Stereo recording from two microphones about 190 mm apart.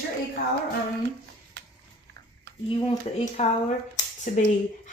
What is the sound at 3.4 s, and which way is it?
Speech, 35° left (ahead or behind).